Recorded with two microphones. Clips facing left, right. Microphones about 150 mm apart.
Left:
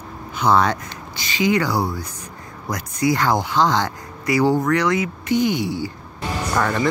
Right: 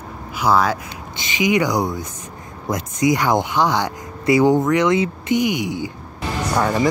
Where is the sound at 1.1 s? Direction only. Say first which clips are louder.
Right 1 dB; 20° right (ahead or behind).